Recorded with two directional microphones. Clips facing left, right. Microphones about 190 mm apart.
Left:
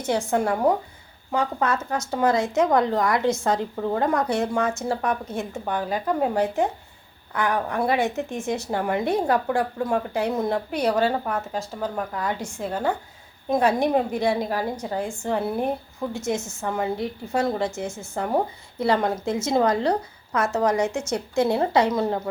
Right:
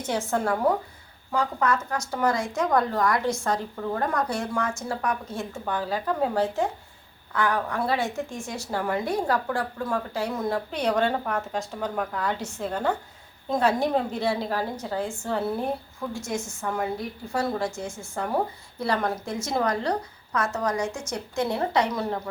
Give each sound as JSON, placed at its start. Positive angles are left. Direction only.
{"t": 0.0, "sound": "a woman's voice", "side_deg": 15}
{"t": 10.8, "sound": "a woman's voice", "side_deg": 5}